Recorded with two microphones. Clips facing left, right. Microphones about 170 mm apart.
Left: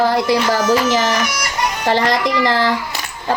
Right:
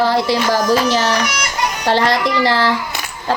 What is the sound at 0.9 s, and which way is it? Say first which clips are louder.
Speech: even; 15° left (ahead or behind).